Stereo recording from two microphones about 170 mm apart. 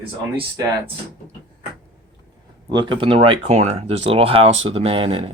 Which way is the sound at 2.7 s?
25° right (ahead or behind).